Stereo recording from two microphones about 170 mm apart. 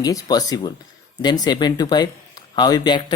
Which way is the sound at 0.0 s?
20° left (ahead or behind).